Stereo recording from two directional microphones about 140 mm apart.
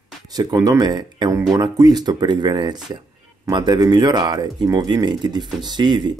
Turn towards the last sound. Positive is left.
turn(degrees=-30)  # may be behind; listen again after turning